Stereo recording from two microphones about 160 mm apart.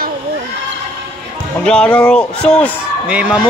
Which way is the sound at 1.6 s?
5° left (ahead or behind).